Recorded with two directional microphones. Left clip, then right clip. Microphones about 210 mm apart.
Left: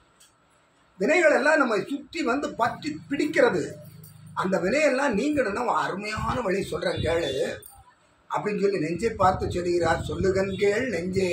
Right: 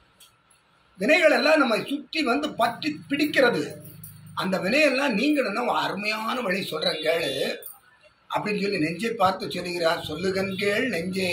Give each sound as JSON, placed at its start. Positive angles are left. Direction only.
{"t": 0.9, "sound": "a man's voice", "side_deg": 15}